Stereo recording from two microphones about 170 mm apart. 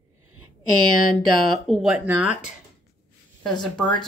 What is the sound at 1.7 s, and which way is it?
Speech, centre (ahead or behind).